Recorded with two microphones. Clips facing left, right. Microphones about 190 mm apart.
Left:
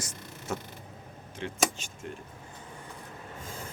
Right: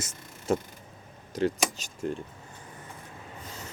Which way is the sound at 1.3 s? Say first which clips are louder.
Right 4 dB; 40° right (ahead or behind).